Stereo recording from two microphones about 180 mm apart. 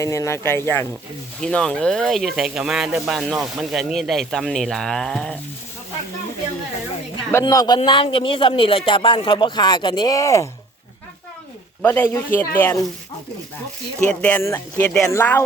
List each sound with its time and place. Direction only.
0.0 s speech: 15° left (ahead or behind)
7.4 s speech: 20° left (ahead or behind)
11.8 s speech: 10° left (ahead or behind)
14.1 s speech: 5° left (ahead or behind)